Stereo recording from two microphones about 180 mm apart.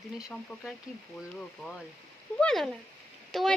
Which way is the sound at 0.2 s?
5° right (ahead or behind).